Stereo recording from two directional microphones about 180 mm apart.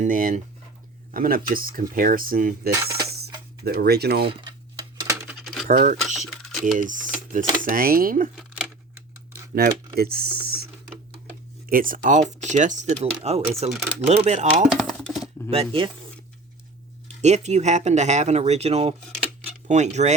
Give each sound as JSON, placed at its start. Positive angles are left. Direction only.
{"t": 0.0, "sound": "speech", "side_deg": -50}
{"t": 2.7, "sound": "speech", "side_deg": -15}
{"t": 3.6, "sound": "speech", "side_deg": -60}
{"t": 4.3, "sound": "a sound", "side_deg": -25}
{"t": 5.3, "sound": "coin", "side_deg": 0}
{"t": 5.6, "sound": "speech", "side_deg": -45}
{"t": 6.1, "sound": "mechanisms", "side_deg": 0}
{"t": 6.7, "sound": "speech", "side_deg": -45}
{"t": 8.4, "sound": "a sound", "side_deg": -5}
{"t": 9.6, "sound": "speech", "side_deg": -60}
{"t": 14.7, "sound": "a sound", "side_deg": 0}
{"t": 15.4, "sound": "speech", "side_deg": -30}
{"t": 17.2, "sound": "speech", "side_deg": -40}